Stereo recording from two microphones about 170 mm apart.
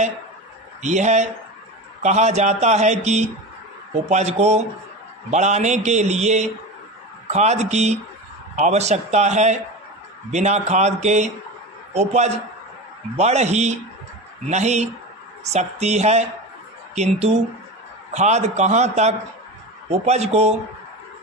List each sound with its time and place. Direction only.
0.8 s a man's voice: 45° right (ahead or behind)